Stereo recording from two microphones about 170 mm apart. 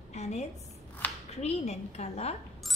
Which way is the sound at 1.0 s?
10° left (ahead or behind).